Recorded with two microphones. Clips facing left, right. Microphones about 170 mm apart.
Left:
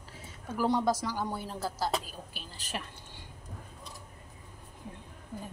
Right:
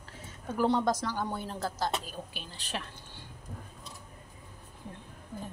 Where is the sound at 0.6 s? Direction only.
10° left (ahead or behind).